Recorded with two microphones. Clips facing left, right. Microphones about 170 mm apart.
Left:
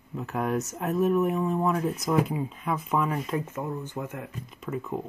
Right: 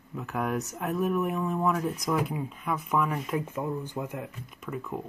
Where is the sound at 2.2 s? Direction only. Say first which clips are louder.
Left 2 dB; centre (ahead or behind).